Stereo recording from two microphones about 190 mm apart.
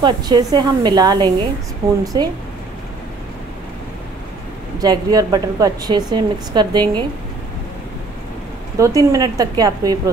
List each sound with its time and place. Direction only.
0.0 s a woman's voice: 20° right (ahead or behind)
4.7 s a woman's voice: 20° right (ahead or behind)
8.7 s a woman's voice: 15° right (ahead or behind)